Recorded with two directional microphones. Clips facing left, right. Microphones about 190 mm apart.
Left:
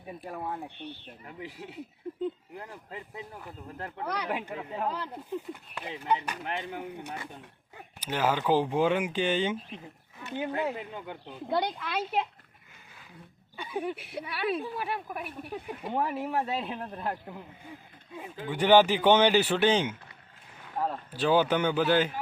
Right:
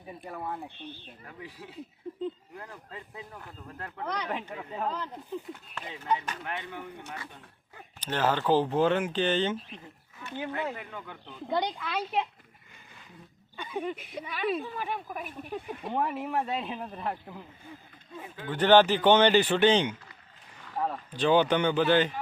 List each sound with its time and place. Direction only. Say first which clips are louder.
0.2 s speech: even; 5° left (ahead or behind)
0.8 s speech: left 2 dB; 60° left (ahead or behind)
2.6 s speech: left 2 dB; 15° left (ahead or behind)
4.0 s speech: left 1 dB; 10° left (ahead or behind)
6.4 s speech: left 2 dB; 25° left (ahead or behind)
6.7 s speech: left 3 dB; 15° left (ahead or behind)
10.8 s speech: left 3 dB; 25° left (ahead or behind)
11.4 s speech: even; 5° left (ahead or behind)
13.6 s speech: left 1 dB; 10° left (ahead or behind)
18.2 s speech: even; 10° left (ahead or behind)